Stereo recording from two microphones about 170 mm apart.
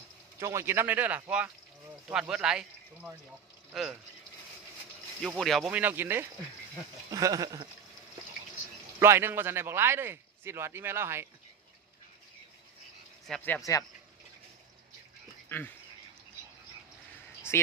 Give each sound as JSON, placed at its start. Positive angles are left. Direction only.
{"t": 0.3, "sound": "speech", "side_deg": -15}
{"t": 5.2, "sound": "speech", "side_deg": 0}
{"t": 9.0, "sound": "speech", "side_deg": -15}
{"t": 13.2, "sound": "speech", "side_deg": 5}
{"t": 15.4, "sound": "dog", "side_deg": 10}